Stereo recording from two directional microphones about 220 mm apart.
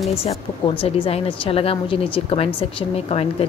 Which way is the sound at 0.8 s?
25° left (ahead or behind).